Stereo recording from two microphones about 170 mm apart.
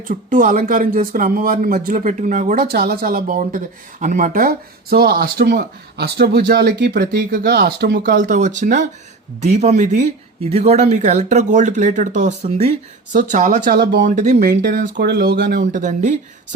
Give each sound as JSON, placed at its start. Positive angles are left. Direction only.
{"t": 0.1, "sound": "speech", "side_deg": -50}
{"t": 7.3, "sound": "speech", "side_deg": -60}
{"t": 13.7, "sound": "speech", "side_deg": -90}
{"t": 14.1, "sound": "speech", "side_deg": -45}
{"t": 14.6, "sound": "speech", "side_deg": -65}
{"t": 15.6, "sound": "speech", "side_deg": -50}